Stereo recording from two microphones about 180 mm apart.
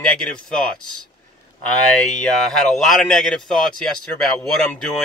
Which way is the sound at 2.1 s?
5° left (ahead or behind).